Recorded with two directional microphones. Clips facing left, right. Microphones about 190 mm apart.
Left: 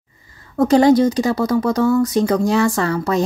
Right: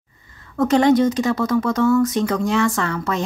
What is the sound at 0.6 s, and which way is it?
Speech, 35° left (ahead or behind).